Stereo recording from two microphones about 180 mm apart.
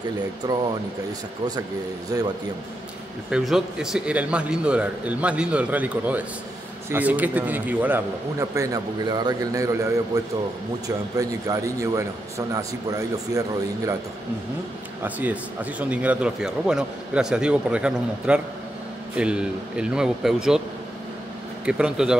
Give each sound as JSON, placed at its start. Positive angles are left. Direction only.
{"t": 0.4, "sound": "a man's voice", "side_deg": -20}
{"t": 2.0, "sound": "a man's voice", "side_deg": -20}
{"t": 3.3, "sound": "speech", "side_deg": -5}
{"t": 15.0, "sound": "a man's voice", "side_deg": -10}
{"t": 21.6, "sound": "a man's voice", "side_deg": -5}